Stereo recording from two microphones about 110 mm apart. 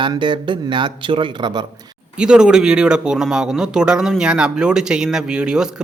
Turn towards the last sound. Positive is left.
turn(degrees=-5)  # may be behind; listen again after turning